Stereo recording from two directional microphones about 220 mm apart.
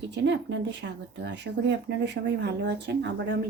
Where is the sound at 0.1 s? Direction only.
55° right (ahead or behind).